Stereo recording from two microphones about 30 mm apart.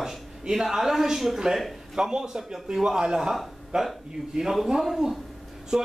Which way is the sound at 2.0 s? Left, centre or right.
Right.